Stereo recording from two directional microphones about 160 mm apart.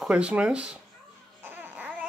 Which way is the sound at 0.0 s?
5° right (ahead or behind).